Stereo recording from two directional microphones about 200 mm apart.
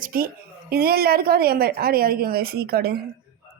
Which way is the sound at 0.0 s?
45° right (ahead or behind).